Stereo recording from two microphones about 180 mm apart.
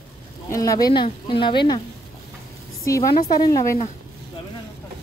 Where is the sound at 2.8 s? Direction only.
15° left (ahead or behind).